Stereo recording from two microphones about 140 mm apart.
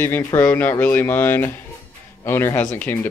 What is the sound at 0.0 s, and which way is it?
Speech, 15° left (ahead or behind).